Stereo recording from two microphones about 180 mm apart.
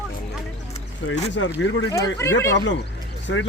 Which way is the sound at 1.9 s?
20° left (ahead or behind).